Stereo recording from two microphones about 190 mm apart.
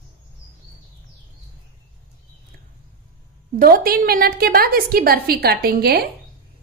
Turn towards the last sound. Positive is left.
turn(degrees=-55)  # may be behind; listen again after turning